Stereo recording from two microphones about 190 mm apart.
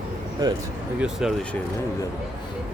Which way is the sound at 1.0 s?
Centre (ahead or behind).